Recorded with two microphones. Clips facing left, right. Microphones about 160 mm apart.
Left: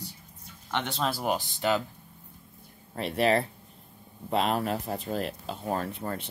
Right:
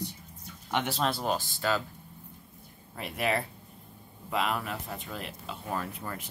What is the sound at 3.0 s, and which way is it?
Speech, 35° left (ahead or behind).